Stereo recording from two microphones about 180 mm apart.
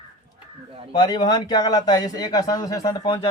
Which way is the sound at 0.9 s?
20° left (ahead or behind).